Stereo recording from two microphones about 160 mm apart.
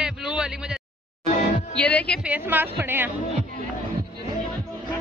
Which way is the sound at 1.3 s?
50° left (ahead or behind).